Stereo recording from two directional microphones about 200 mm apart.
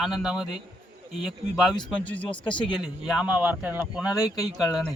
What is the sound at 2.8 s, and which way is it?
A man's voice, 5° right (ahead or behind).